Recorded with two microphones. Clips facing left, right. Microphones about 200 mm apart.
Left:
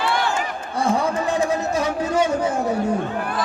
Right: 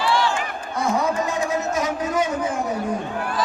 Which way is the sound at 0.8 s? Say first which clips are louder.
Left 1 dB; 30° left (ahead or behind).